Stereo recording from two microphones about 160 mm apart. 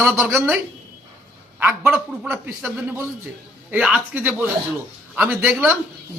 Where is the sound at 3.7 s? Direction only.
5° right (ahead or behind).